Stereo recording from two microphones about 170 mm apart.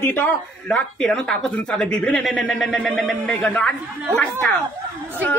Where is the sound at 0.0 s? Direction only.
10° left (ahead or behind).